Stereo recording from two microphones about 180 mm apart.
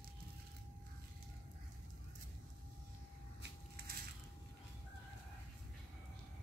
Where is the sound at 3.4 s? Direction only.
55° right (ahead or behind).